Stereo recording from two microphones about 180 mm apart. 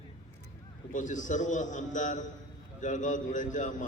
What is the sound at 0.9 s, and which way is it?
A man's voice, 45° left (ahead or behind).